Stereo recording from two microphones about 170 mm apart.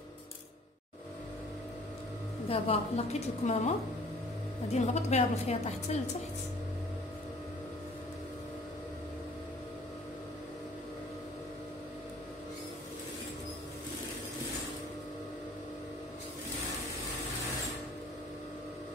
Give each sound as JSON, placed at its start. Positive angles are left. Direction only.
{"t": 2.5, "sound": "a woman's voice", "side_deg": 40}
{"t": 4.7, "sound": "a woman's voice", "side_deg": 40}